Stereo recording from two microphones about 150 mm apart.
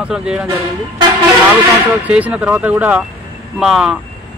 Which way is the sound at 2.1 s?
10° right (ahead or behind).